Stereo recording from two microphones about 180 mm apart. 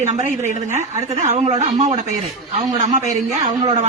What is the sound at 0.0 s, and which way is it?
A woman's voice, 40° right (ahead or behind).